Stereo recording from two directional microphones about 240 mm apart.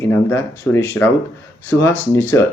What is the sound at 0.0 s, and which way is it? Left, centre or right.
A man's voice, centre.